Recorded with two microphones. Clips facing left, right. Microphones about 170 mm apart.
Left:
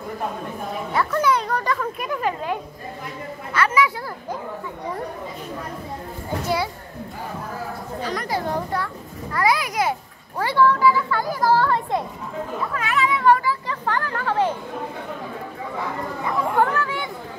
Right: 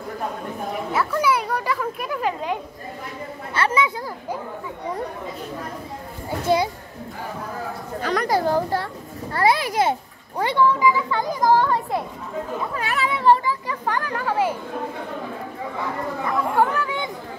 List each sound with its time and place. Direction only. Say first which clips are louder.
0.9 s a child's voice: left 1 dB; 5° right (ahead or behind)
3.5 s a child's voice: left 1 dB; 30° right (ahead or behind)
6.4 s a child's voice: right 5 dB; 20° right (ahead or behind)
8.0 s speech: right 5 dB; 70° right (ahead or behind)
8.3 s a child's voice: right 5 dB; 35° right (ahead or behind); by 11.8 s 15° right (ahead or behind)
12.7 s speech: left 4 dB; 35° right (ahead or behind)
13.5 s a child's voice: even; 15° right (ahead or behind)
16.5 s a child's voice: even; 15° right (ahead or behind)